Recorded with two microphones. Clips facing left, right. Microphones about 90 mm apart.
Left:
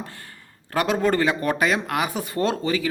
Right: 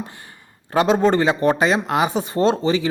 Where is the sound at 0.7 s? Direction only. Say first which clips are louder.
Right 5 dB; 25° right (ahead or behind).